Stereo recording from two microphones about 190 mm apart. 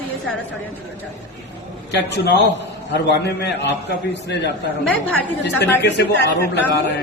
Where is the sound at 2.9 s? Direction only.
65° left (ahead or behind).